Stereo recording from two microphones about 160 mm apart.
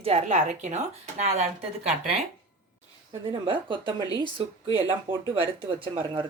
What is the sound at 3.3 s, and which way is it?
Speech, 30° right (ahead or behind).